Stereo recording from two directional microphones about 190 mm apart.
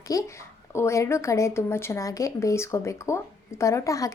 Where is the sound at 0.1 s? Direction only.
20° left (ahead or behind).